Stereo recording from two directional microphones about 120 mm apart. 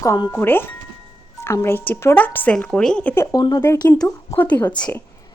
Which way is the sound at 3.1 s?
25° left (ahead or behind).